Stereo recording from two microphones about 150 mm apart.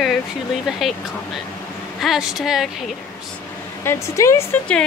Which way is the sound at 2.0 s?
Centre (ahead or behind).